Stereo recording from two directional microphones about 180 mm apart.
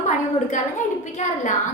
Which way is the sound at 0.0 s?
45° left (ahead or behind).